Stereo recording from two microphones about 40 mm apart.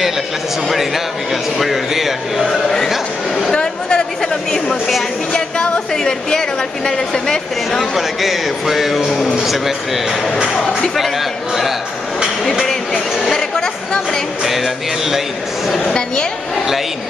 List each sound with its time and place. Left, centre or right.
1.6 s speech: centre
3.5 s a sound: centre
7.9 s speech: centre
9.1 s a man's voice: centre
12.6 s a sound: centre
14.4 s speech: centre
15.8 s a woman's voice: left